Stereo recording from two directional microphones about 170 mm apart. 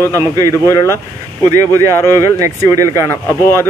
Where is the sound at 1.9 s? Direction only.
15° left (ahead or behind).